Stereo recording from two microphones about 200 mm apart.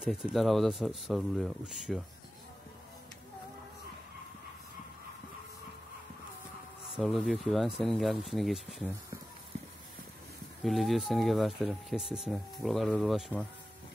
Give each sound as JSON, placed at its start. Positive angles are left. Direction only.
{"t": 0.0, "sound": "speech", "side_deg": 0}
{"t": 7.0, "sound": "speech", "side_deg": 0}
{"t": 10.6, "sound": "speech", "side_deg": 0}